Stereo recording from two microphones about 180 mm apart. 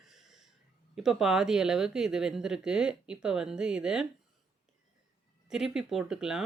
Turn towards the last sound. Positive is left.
turn(degrees=-5)  # may be behind; listen again after turning